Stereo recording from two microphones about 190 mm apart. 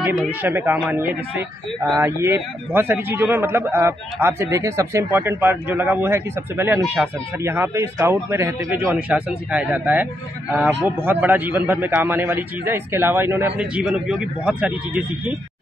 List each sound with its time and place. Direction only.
0.2 s a man's voice: 10° right (ahead or behind)